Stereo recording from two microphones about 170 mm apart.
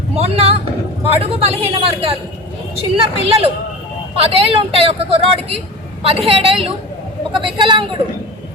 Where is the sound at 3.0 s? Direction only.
35° right (ahead or behind).